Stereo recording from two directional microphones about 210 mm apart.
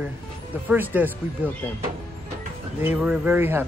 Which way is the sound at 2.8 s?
10° right (ahead or behind).